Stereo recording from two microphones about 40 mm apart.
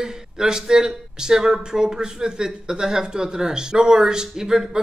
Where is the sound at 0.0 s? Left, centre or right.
Centre.